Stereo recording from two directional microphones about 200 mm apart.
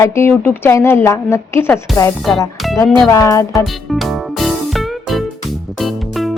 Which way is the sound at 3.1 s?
15° left (ahead or behind).